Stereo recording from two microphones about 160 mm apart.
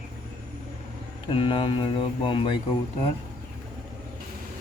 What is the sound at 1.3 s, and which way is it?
Speech, 35° left (ahead or behind).